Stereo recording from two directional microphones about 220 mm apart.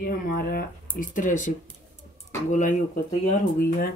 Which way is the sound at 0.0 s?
40° left (ahead or behind).